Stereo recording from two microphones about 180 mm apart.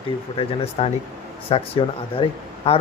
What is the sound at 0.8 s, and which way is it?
A man's voice, 30° left (ahead or behind).